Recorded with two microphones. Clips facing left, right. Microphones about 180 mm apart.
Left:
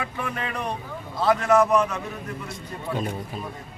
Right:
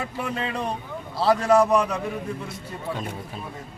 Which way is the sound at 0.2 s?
25° right (ahead or behind).